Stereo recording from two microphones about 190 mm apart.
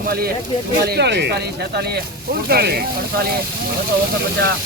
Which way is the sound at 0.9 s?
60° right (ahead or behind).